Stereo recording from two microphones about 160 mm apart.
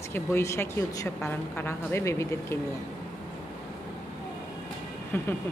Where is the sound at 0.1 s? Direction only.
15° left (ahead or behind).